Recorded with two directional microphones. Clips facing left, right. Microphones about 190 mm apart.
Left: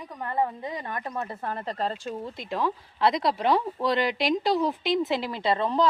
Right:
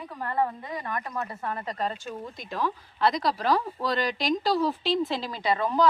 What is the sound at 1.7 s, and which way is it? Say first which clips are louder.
Speech: left 4 dB; 30° left (ahead or behind).